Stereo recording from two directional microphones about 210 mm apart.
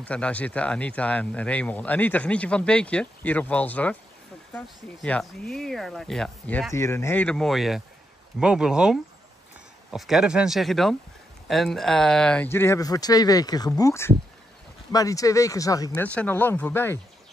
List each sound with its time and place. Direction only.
0.0 s speech: 5° left (ahead or behind)